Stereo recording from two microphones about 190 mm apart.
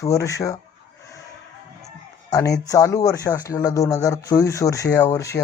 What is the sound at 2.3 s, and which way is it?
Speech, 15° left (ahead or behind).